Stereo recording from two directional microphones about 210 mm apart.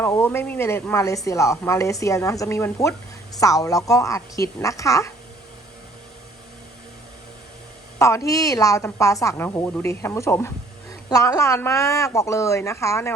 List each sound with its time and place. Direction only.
0.0 s speech: 10° left (ahead or behind)
7.9 s speech: 15° left (ahead or behind)